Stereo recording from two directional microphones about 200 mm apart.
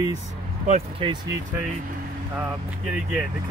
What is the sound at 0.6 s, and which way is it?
Speech, 35° right (ahead or behind).